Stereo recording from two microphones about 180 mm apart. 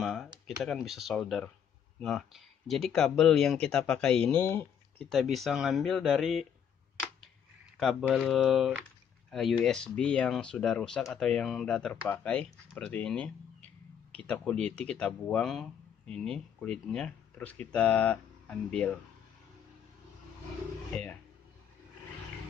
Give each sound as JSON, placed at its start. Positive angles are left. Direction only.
{"t": 0.0, "sound": "computer keyboard", "side_deg": 0}
{"t": 0.7, "sound": "speech", "side_deg": 0}
{"t": 5.1, "sound": "speech", "side_deg": 0}
{"t": 7.7, "sound": "a sound", "side_deg": 0}
{"t": 8.1, "sound": "speech", "side_deg": 0}